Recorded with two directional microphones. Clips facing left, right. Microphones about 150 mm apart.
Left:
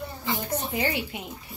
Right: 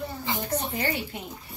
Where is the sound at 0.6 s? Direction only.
Centre (ahead or behind).